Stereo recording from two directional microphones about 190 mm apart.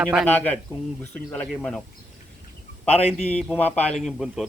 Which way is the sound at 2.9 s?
35° left (ahead or behind).